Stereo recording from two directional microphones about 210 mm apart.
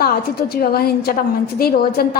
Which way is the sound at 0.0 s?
45° left (ahead or behind).